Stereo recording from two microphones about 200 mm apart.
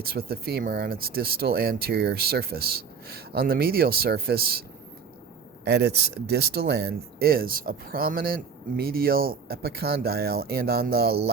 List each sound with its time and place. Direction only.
0.0 s speech: 50° right (ahead or behind)
5.6 s speech: 55° right (ahead or behind)